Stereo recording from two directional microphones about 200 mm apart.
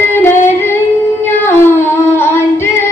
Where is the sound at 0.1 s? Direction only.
10° left (ahead or behind).